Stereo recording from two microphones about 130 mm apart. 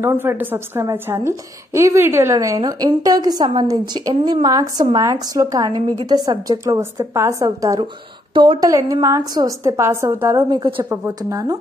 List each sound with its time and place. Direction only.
0.0 s a woman's voice: 20° right (ahead or behind)